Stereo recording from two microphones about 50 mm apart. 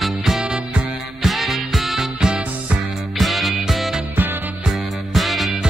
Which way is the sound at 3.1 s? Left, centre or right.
Centre.